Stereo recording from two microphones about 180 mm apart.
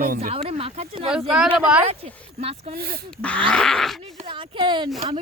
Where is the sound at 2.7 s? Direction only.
60° right (ahead or behind).